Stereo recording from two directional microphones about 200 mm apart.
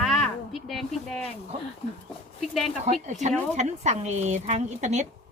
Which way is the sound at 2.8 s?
35° right (ahead or behind).